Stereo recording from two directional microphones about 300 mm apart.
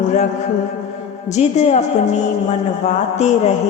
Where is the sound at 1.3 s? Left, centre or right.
Left.